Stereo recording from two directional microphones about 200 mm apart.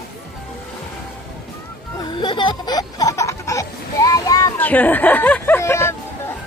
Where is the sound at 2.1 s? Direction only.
25° left (ahead or behind).